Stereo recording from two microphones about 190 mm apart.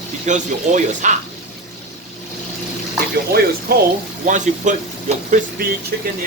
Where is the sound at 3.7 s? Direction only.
55° right (ahead or behind).